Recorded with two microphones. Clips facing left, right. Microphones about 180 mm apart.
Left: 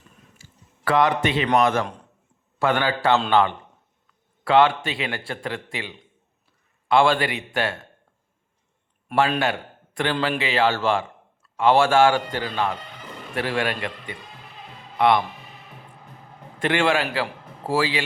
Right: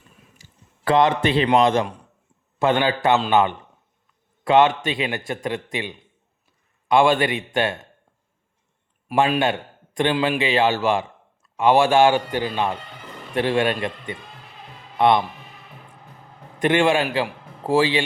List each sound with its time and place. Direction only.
0.9 s speech: 25° right (ahead or behind)
4.4 s a man's voice: 20° right (ahead or behind)
6.8 s speech: 20° right (ahead or behind)
9.4 s a man's voice: 20° right (ahead or behind)
16.6 s speech: 20° right (ahead or behind)